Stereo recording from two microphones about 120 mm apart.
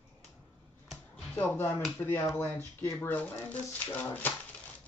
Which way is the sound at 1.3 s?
15° left (ahead or behind).